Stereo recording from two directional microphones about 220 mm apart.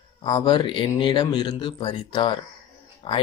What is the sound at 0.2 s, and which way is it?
Speech, 20° left (ahead or behind).